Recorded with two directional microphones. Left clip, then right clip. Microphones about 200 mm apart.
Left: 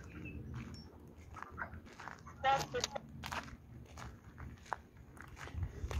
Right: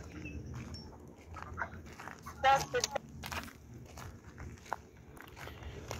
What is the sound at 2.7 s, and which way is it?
Vehicle, 50° right (ahead or behind).